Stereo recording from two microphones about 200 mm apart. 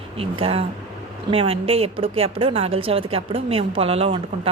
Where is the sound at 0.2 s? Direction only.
30° right (ahead or behind).